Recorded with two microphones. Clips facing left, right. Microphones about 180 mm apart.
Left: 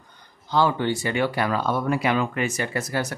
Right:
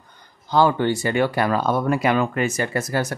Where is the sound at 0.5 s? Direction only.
50° right (ahead or behind).